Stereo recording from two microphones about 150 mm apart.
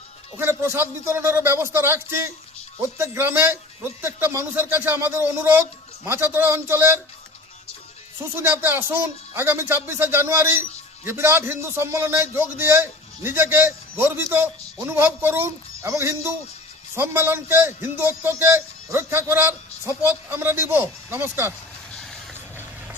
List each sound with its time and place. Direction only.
0.3 s speech: 15° right (ahead or behind)
8.4 s speech: 15° right (ahead or behind)